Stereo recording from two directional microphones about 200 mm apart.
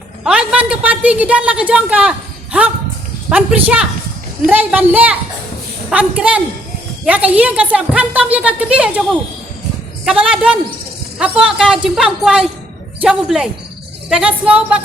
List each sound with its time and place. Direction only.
0.3 s a woman's voice: 5° right (ahead or behind)
10.1 s a woman's voice: 5° right (ahead or behind)